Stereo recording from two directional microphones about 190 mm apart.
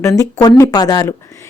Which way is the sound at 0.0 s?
15° left (ahead or behind).